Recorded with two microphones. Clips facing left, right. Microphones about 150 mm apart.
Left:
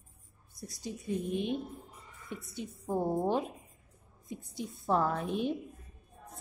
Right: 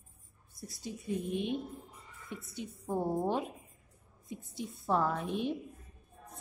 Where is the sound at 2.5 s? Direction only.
Centre (ahead or behind).